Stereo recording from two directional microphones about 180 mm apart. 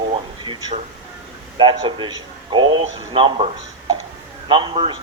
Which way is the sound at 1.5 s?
25° right (ahead or behind).